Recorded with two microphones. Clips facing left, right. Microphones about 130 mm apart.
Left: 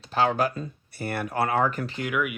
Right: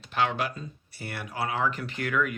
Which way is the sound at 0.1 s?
40° left (ahead or behind).